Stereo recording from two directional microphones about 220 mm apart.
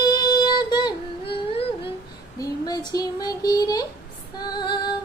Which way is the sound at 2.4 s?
20° left (ahead or behind).